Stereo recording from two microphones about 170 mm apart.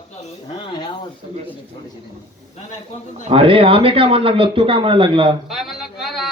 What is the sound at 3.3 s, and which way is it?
Speech, 30° right (ahead or behind).